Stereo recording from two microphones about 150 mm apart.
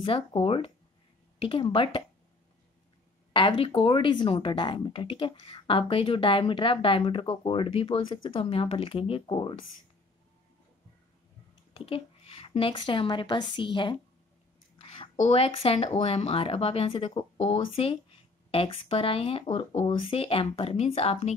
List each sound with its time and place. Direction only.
0.0 s a woman's voice: 40° left (ahead or behind)
3.3 s a woman's voice: 35° left (ahead or behind)
11.7 s a woman's voice: 35° left (ahead or behind)
15.1 s a woman's voice: 45° left (ahead or behind)